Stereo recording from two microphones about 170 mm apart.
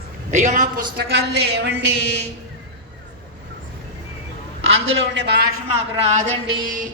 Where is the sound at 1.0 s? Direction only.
70° right (ahead or behind).